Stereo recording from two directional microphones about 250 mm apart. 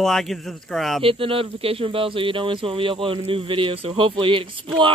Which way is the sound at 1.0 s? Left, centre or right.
Right.